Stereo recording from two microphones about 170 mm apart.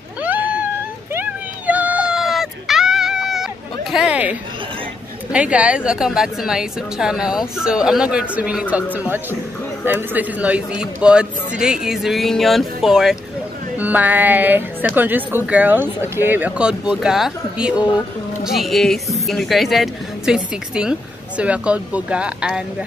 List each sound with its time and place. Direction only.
0.2 s cat: 10° right (ahead or behind)
1.1 s a sound: 10° right (ahead or behind)
3.9 s a woman's voice: 5° right (ahead or behind)